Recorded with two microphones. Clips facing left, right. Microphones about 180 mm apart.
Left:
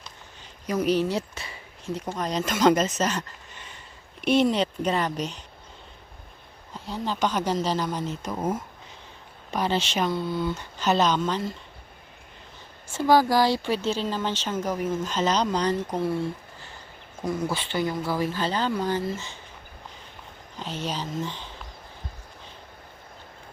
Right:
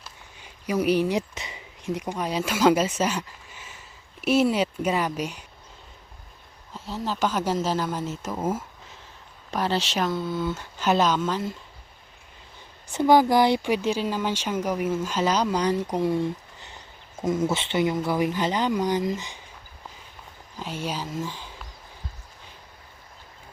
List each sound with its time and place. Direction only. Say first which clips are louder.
0.0 s speech: even; 10° right (ahead or behind)
6.7 s speech: even; centre (ahead or behind)
12.9 s speech: right 2 dB; 20° right (ahead or behind)
20.6 s speech: even; 10° right (ahead or behind)